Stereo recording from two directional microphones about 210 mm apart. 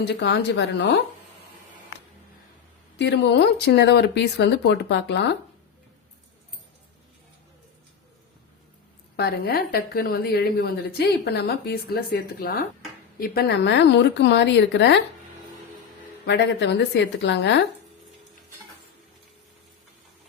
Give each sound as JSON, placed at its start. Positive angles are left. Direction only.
{"t": 0.0, "sound": "a woman's voice", "side_deg": 55}
{"t": 3.0, "sound": "a woman's voice", "side_deg": 55}
{"t": 9.1, "sound": "a woman's voice", "side_deg": 50}
{"t": 16.2, "sound": "a woman's voice", "side_deg": 55}